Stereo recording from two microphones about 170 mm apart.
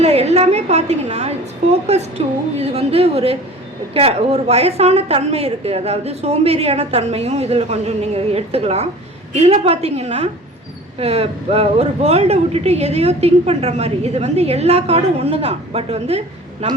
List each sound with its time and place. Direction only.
0.0 s speech: 40° right (ahead or behind)